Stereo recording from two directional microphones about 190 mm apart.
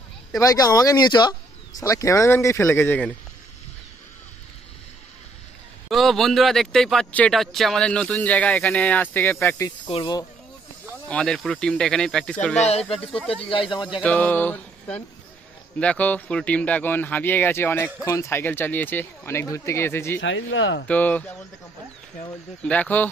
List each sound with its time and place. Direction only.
0.3 s speech: 20° left (ahead or behind)
5.9 s speech: centre (ahead or behind); by 10.2 s 25° left (ahead or behind)
11.1 s speech: 5° left (ahead or behind)
12.6 s speech: 30° left (ahead or behind)
14.0 s speech: 10° left (ahead or behind)
20.2 s speech: 75° left (ahead or behind)
20.8 s speech: 10° left (ahead or behind)
22.6 s speech: 5° left (ahead or behind)